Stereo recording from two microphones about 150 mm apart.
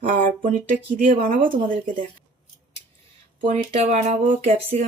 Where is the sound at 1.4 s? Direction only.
35° right (ahead or behind).